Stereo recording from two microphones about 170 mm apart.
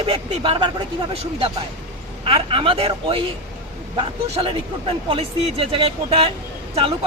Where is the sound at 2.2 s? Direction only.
30° right (ahead or behind).